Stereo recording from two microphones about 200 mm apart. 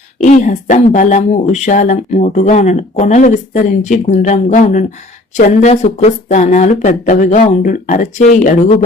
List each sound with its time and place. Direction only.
0.2 s speech: 40° left (ahead or behind)